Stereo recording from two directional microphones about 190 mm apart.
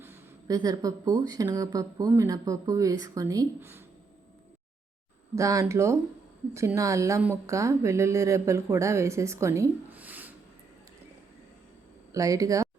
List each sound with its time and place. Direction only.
0.0 s speech: 10° right (ahead or behind)
5.3 s speech: 15° right (ahead or behind)
12.1 s speech: 20° right (ahead or behind)